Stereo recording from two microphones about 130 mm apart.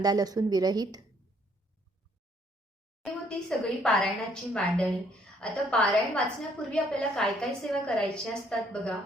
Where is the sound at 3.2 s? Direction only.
5° left (ahead or behind).